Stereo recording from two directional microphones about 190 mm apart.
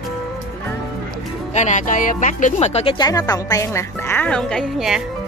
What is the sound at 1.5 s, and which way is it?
A woman's voice, 40° left (ahead or behind).